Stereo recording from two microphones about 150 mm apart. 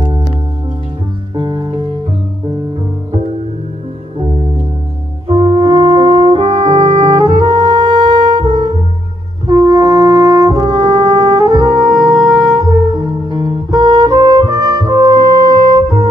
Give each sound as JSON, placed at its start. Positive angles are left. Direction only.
{"t": 1.3, "sound": "music", "side_deg": -35}
{"t": 5.3, "sound": "brass instrument", "side_deg": -35}
{"t": 11.9, "sound": "music", "side_deg": 0}
{"t": 12.5, "sound": "music", "side_deg": -25}